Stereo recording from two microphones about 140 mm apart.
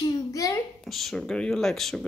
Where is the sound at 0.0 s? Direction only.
25° left (ahead or behind).